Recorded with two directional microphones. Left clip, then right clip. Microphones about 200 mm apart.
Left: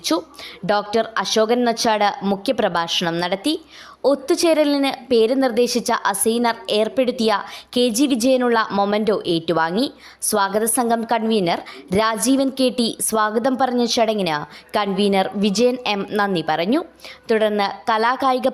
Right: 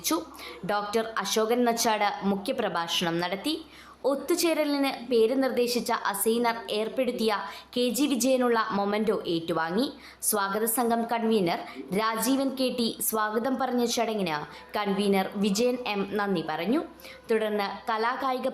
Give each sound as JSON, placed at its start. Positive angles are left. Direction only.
{"t": 0.1, "sound": "a woman's voice", "side_deg": 25}